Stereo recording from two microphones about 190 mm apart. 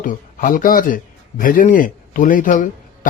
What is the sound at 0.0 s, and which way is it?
Speech, 45° left (ahead or behind).